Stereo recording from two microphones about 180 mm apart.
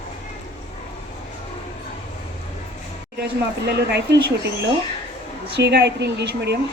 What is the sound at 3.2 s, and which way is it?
Speech, 65° right (ahead or behind).